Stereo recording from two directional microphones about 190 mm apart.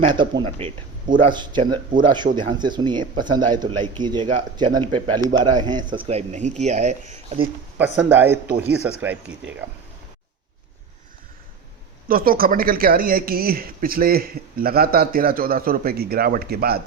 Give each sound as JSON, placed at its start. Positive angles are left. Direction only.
{"t": 0.0, "sound": "speech", "side_deg": -25}
{"t": 7.9, "sound": "speech", "side_deg": -10}
{"t": 12.0, "sound": "speech", "side_deg": -50}